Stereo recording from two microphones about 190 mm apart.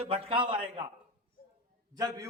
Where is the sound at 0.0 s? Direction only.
30° right (ahead or behind).